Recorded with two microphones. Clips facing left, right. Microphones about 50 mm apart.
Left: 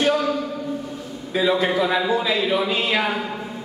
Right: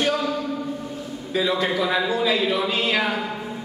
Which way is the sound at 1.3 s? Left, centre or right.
Centre.